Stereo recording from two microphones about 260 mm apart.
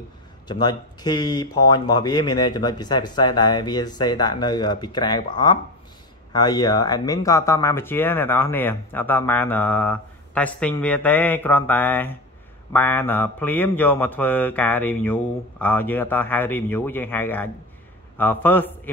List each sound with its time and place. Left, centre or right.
0.5 s speech: centre